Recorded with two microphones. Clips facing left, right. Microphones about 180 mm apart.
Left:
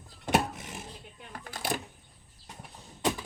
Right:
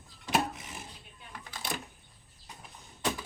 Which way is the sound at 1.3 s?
50° left (ahead or behind).